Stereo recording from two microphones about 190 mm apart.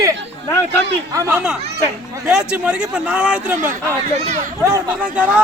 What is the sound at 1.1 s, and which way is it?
Speech, 15° right (ahead or behind).